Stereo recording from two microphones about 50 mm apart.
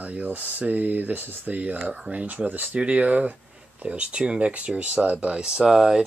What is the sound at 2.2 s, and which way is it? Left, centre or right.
Speech, right.